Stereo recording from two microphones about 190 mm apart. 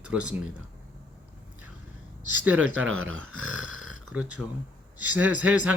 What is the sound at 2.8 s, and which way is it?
Speech, 90° right.